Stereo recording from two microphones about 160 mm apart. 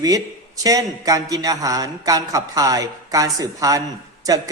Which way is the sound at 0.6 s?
20° right (ahead or behind).